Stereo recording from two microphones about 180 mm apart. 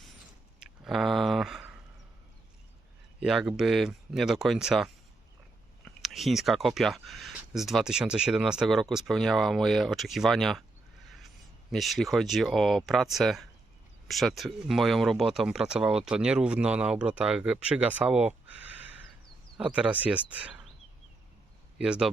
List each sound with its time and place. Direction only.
0.6 s a sound: centre (ahead or behind)
3.2 s speech: 5° right (ahead or behind)
11.7 s speech: centre (ahead or behind)
19.5 s speech: 5° right (ahead or behind)
21.8 s speech: 5° right (ahead or behind)